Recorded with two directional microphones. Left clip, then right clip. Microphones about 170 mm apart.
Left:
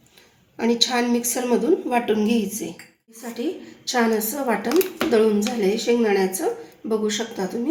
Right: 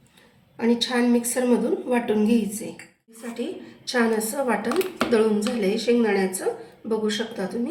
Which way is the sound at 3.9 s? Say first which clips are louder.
Left 1 dB; 45° left (ahead or behind).